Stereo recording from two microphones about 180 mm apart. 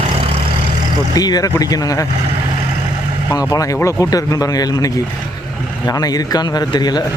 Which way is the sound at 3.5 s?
20° left (ahead or behind).